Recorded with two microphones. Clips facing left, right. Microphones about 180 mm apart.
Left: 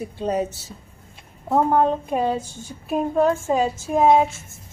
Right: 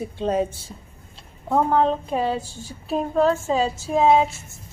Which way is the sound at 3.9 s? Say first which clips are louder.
Left 1 dB; 10° left (ahead or behind).